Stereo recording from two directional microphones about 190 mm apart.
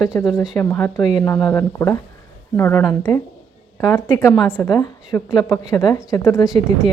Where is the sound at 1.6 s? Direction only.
20° left (ahead or behind).